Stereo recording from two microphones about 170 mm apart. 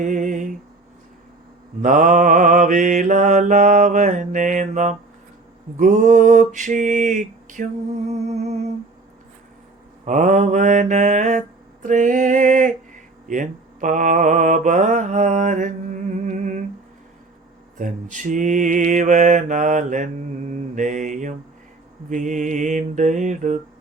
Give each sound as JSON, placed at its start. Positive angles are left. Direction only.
{"t": 0.0, "sound": "a sound", "side_deg": -50}
{"t": 1.8, "sound": "mantra", "side_deg": -50}
{"t": 10.1, "sound": "mantra", "side_deg": -45}
{"t": 17.7, "sound": "mantra", "side_deg": -50}